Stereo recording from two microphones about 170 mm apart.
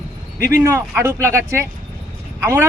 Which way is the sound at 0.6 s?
15° right (ahead or behind).